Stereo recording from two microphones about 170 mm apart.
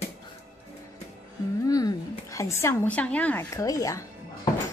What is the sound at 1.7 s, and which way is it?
A woman's voice, 20° left (ahead or behind).